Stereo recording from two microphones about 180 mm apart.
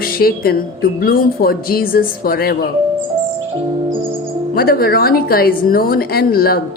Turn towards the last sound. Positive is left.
turn(degrees=55)  # may be behind; listen again after turning